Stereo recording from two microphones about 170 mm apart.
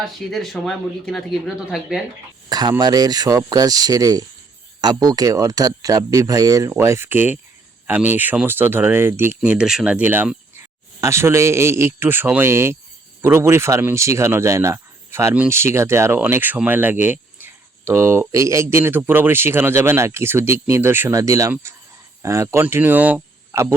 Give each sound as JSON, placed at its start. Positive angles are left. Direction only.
{"t": 0.0, "sound": "speech", "side_deg": 0}
{"t": 2.5, "sound": "speech", "side_deg": -25}